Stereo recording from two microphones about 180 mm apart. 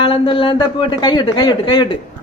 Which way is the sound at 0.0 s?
30° left (ahead or behind).